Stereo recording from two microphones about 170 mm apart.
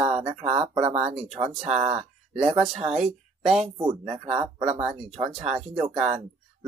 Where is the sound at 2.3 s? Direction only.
5° right (ahead or behind).